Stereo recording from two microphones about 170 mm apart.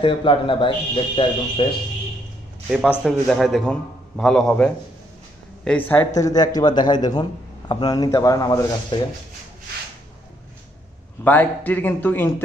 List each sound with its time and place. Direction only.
0.0 s speech: 30° left (ahead or behind)
3.0 s a man's voice: centre (ahead or behind); by 9.0 s 20° left (ahead or behind)
11.2 s a man's voice: 10° left (ahead or behind)